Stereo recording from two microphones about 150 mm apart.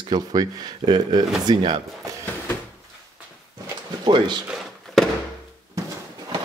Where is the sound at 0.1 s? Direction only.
25° right (ahead or behind).